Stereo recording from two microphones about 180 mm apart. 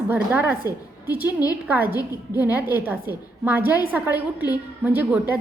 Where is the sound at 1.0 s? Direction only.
10° right (ahead or behind).